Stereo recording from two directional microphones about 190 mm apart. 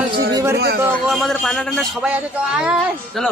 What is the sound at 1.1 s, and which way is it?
A man's voice, centre (ahead or behind).